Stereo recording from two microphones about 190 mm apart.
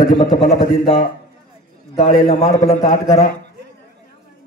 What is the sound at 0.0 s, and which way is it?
Speech, 45° left (ahead or behind).